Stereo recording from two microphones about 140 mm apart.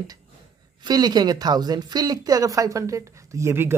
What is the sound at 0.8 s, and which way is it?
A woman's voice, 30° right (ahead or behind).